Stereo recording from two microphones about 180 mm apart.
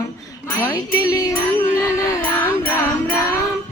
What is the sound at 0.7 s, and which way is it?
Speech, 15° left (ahead or behind).